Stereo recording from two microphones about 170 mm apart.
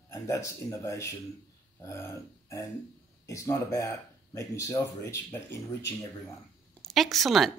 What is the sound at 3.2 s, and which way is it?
Speech, 20° left (ahead or behind).